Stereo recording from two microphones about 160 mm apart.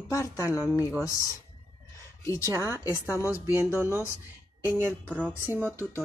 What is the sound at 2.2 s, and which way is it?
Speech, 20° left (ahead or behind).